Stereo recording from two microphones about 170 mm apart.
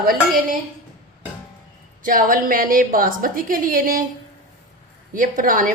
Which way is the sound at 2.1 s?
55° right (ahead or behind).